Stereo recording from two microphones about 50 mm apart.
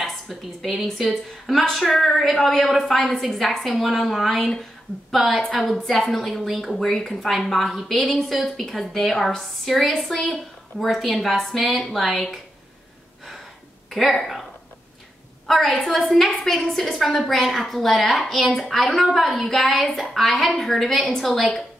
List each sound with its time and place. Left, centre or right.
0.0 s a sound: centre
0.9 s a woman's voice: centre
13.8 s speech: centre
15.4 s a woman's voice: centre
21.0 s a woman's voice: centre